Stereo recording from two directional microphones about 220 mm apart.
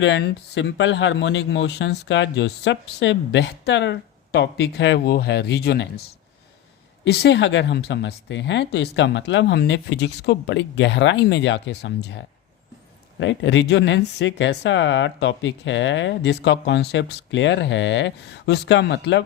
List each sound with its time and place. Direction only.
0.0 s speech: 55° left (ahead or behind)